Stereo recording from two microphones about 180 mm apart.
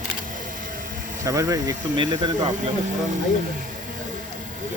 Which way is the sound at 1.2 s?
20° right (ahead or behind).